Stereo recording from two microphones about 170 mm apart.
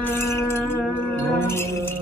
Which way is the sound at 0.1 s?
15° left (ahead or behind).